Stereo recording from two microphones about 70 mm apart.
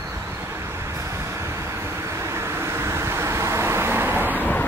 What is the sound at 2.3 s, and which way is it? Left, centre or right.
Vehicle, right.